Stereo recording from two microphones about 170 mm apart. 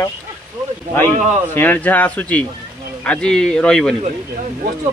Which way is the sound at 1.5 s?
10° left (ahead or behind).